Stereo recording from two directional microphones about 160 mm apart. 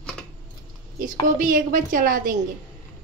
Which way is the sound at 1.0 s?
55° right (ahead or behind).